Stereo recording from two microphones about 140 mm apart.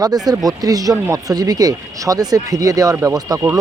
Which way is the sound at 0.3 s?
25° right (ahead or behind).